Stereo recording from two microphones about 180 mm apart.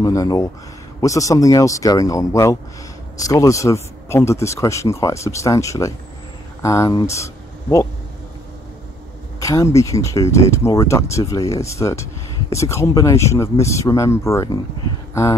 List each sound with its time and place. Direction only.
0.0 s speech: 20° left (ahead or behind)
9.4 s speech: 15° left (ahead or behind)